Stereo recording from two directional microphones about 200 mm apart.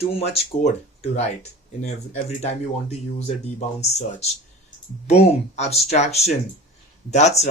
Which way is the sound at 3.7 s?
35° left (ahead or behind).